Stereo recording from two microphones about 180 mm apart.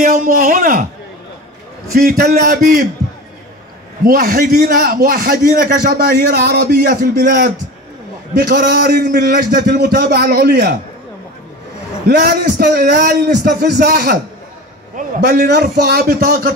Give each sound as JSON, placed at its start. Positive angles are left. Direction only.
{"t": 0.0, "sound": "a man's voice", "side_deg": -45}
{"t": 2.0, "sound": "a man's voice", "side_deg": -55}
{"t": 4.0, "sound": "a man's voice", "side_deg": -55}
{"t": 12.1, "sound": "a man's voice", "side_deg": -65}
{"t": 15.0, "sound": "a man's voice", "side_deg": -50}